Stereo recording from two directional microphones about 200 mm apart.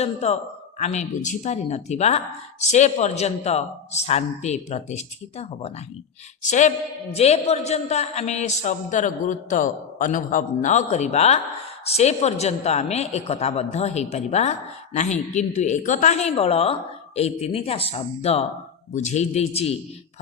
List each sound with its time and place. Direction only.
0.0 s speech: 30° left (ahead or behind)